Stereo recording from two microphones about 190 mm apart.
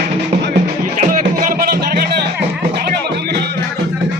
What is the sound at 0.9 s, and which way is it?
Music, 45° right (ahead or behind).